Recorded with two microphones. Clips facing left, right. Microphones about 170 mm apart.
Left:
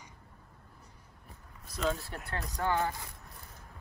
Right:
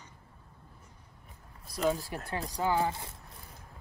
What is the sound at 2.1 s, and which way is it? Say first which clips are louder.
Speech: right 3 dB; 10° right (ahead or behind).